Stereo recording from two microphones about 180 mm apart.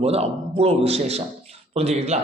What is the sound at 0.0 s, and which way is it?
A man's voice, 35° right (ahead or behind).